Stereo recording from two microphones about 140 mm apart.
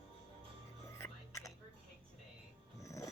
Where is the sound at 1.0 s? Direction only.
20° left (ahead or behind).